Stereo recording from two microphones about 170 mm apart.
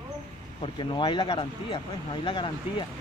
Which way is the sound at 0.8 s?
30° left (ahead or behind).